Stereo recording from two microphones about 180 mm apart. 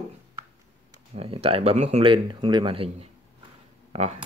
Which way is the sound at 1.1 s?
30° right (ahead or behind).